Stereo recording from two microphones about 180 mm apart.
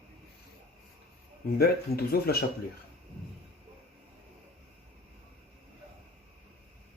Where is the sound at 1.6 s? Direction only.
60° left (ahead or behind).